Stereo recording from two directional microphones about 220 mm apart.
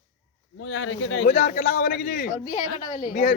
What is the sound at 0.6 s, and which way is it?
Speech, 55° left (ahead or behind).